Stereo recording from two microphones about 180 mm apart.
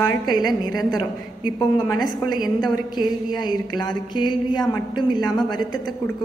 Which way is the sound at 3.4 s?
25° left (ahead or behind).